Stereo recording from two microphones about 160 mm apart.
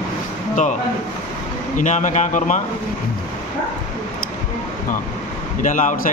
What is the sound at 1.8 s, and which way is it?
Speech, 50° left (ahead or behind).